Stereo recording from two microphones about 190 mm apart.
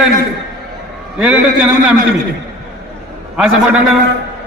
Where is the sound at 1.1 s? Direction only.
5° right (ahead or behind).